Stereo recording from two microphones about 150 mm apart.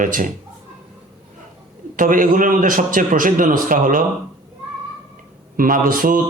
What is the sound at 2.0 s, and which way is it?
A man's voice, 65° right (ahead or behind).